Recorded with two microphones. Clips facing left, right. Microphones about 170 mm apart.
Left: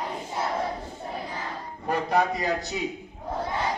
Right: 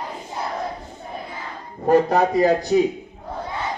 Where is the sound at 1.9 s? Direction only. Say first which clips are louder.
Right 8 dB; 40° right (ahead or behind).